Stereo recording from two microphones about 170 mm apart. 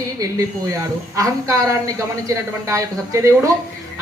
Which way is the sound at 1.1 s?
20° right (ahead or behind).